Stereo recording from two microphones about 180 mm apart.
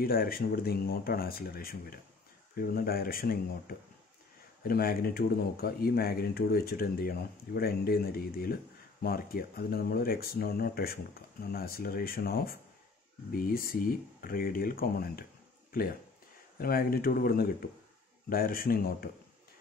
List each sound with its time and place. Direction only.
0.0 s speech: 55° left (ahead or behind)
16.5 s speech: 55° left (ahead or behind)